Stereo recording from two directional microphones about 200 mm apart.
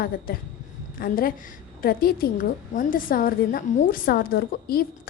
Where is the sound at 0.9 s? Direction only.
45° left (ahead or behind).